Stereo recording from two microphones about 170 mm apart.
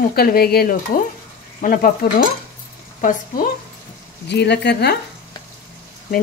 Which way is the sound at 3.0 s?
50° left (ahead or behind).